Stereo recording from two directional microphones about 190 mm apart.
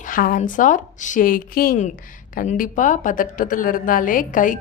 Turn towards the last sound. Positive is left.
turn(degrees=45)  # may be behind; listen again after turning